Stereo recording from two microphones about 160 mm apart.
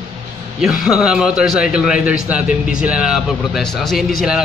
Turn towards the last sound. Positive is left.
turn(degrees=0)  # may be behind; listen again after turning